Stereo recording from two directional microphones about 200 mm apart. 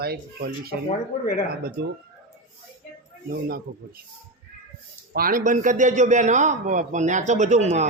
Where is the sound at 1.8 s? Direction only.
50° right (ahead or behind).